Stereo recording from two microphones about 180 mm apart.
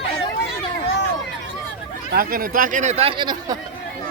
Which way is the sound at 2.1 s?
55° right (ahead or behind).